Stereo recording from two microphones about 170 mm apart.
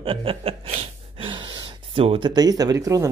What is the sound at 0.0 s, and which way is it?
Chuckle, 30° right (ahead or behind).